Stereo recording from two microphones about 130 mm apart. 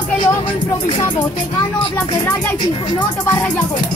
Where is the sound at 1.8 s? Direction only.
35° left (ahead or behind).